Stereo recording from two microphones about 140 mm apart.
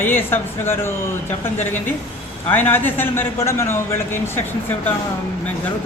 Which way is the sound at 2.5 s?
15° left (ahead or behind).